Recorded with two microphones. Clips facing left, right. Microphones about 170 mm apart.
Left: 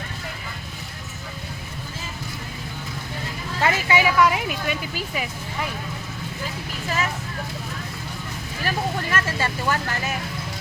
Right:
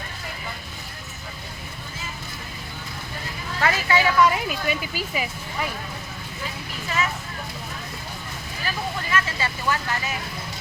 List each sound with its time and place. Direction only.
3.6 s speech: 20° left (ahead or behind); by 5.3 s 5° right (ahead or behind)
8.6 s speech: 50° left (ahead or behind)